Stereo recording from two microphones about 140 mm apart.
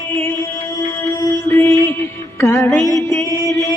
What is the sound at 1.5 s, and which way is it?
Music, 15° left (ahead or behind).